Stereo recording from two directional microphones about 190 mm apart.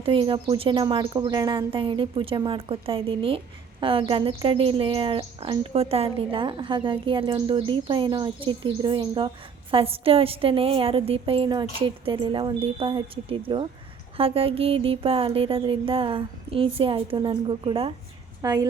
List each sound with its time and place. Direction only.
0.0 s a woman's voice: 30° right (ahead or behind)